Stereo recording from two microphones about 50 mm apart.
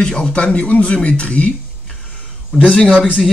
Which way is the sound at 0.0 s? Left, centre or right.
Centre.